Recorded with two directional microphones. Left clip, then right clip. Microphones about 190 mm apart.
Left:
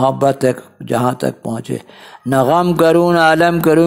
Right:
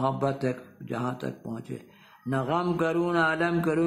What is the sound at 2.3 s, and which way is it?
A man's voice, 45° left (ahead or behind).